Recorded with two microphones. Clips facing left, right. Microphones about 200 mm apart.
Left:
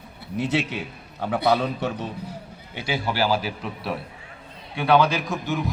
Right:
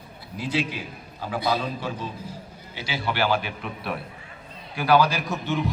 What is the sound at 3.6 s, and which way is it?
Speech, centre (ahead or behind).